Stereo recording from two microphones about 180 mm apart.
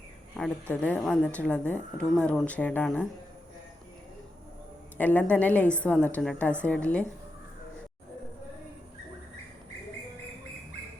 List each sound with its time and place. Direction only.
0.3 s speech: 5° left (ahead or behind)
4.9 s a woman's voice: 10° left (ahead or behind)